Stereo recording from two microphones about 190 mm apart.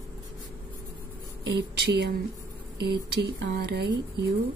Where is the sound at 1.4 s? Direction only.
60° right (ahead or behind).